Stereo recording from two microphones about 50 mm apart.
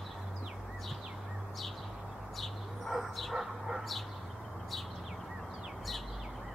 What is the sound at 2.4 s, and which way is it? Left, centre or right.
Bird, centre.